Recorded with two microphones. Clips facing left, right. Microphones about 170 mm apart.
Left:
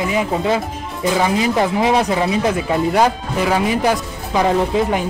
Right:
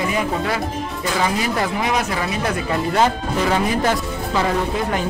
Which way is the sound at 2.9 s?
10° left (ahead or behind).